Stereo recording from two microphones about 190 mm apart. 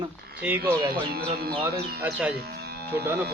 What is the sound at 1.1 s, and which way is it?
Speech, 50° right (ahead or behind).